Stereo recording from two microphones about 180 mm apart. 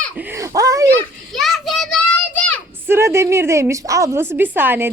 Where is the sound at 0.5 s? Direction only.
20° right (ahead or behind).